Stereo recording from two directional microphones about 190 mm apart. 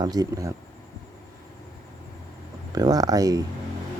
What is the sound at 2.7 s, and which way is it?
Speech, 20° right (ahead or behind).